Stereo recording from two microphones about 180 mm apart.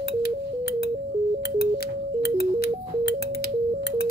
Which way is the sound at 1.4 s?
65° left (ahead or behind).